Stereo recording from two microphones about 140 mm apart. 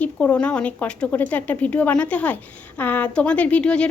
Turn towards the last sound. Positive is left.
turn(degrees=10)  # may be behind; listen again after turning